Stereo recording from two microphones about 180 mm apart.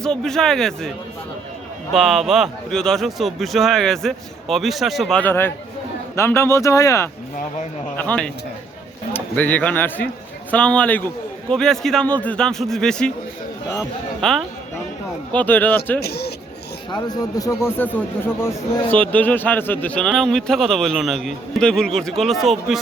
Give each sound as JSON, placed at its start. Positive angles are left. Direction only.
{"t": 0.0, "sound": "speech", "side_deg": 5}
{"t": 9.1, "sound": "speech", "side_deg": 10}
{"t": 14.2, "sound": "speech", "side_deg": 0}
{"t": 16.0, "sound": "speech", "side_deg": 60}
{"t": 16.9, "sound": "speech", "side_deg": 20}